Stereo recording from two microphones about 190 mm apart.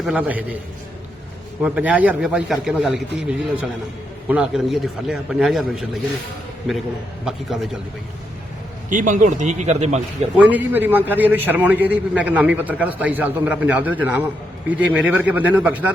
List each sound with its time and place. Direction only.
0.0 s a man's voice: 5° right (ahead or behind)
1.6 s a man's voice: 5° right (ahead or behind)
8.9 s a man's voice: 40° right (ahead or behind)
10.3 s a man's voice: 10° right (ahead or behind)